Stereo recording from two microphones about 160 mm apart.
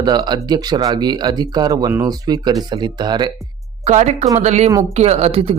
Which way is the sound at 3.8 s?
45° right (ahead or behind).